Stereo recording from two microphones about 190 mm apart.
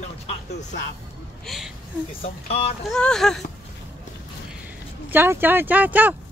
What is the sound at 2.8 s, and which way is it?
Speech, 5° left (ahead or behind).